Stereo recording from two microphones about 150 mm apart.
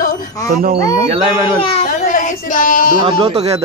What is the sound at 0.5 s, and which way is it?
Speech, 70° right (ahead or behind).